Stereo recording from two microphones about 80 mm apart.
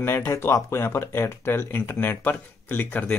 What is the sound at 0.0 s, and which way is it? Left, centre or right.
Speech, left.